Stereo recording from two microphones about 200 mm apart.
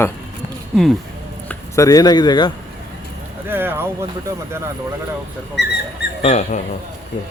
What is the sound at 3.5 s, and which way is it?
Speech, 10° right (ahead or behind).